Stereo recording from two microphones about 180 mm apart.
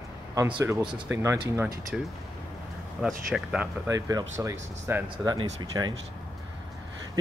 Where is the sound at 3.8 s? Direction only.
20° right (ahead or behind).